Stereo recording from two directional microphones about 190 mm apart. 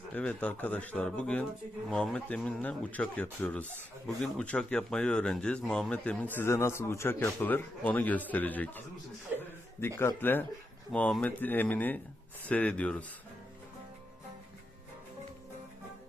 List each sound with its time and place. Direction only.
0.1 s speech: 5° left (ahead or behind)
10.0 s speech: 10° left (ahead or behind)